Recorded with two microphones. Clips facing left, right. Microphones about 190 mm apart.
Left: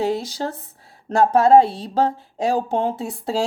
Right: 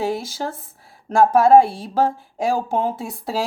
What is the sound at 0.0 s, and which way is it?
Speech, 20° left (ahead or behind).